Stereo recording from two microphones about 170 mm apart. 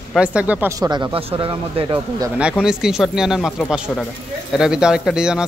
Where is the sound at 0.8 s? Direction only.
25° right (ahead or behind).